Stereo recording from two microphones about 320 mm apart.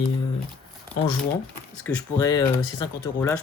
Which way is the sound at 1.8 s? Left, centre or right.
Centre.